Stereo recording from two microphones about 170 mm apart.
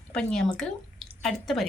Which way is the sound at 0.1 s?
5° left (ahead or behind).